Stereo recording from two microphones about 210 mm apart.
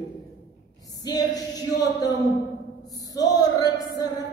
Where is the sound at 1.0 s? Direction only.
20° left (ahead or behind).